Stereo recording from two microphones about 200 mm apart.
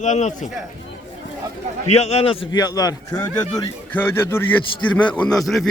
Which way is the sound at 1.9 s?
30° left (ahead or behind).